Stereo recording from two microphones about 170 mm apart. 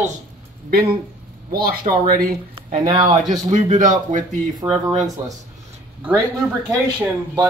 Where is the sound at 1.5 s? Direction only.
60° right (ahead or behind).